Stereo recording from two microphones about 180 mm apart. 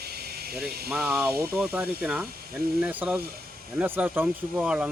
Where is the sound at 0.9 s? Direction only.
5° right (ahead or behind).